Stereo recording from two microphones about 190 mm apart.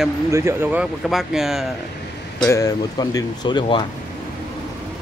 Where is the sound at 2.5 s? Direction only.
20° left (ahead or behind).